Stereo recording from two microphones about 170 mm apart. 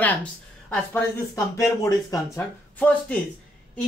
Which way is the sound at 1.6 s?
20° left (ahead or behind).